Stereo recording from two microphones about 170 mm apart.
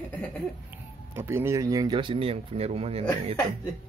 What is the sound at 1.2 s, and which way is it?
Speech, 15° right (ahead or behind).